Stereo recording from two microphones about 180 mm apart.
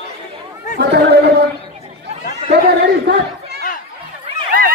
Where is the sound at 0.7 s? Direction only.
70° right (ahead or behind).